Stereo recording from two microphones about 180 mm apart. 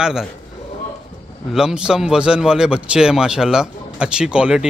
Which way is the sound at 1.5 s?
5° right (ahead or behind).